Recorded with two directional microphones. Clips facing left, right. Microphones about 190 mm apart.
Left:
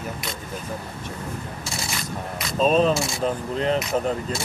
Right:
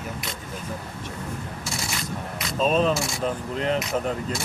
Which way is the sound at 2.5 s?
35° left (ahead or behind).